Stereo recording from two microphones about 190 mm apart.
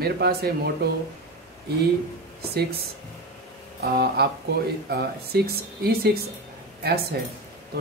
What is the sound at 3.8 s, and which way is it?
Speech, 55° right (ahead or behind).